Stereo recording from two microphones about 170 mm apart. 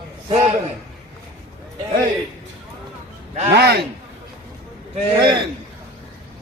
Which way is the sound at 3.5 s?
75° right (ahead or behind).